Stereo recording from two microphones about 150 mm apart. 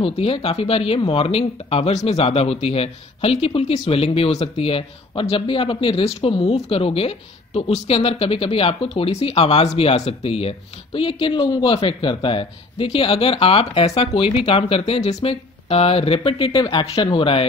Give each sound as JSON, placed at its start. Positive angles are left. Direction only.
{"t": 0.0, "sound": "speech", "side_deg": 40}